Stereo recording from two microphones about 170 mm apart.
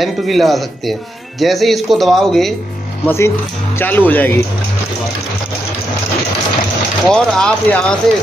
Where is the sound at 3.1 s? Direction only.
15° left (ahead or behind).